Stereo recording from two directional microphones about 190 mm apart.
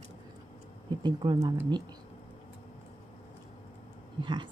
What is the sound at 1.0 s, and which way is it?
Speech, 25° right (ahead or behind).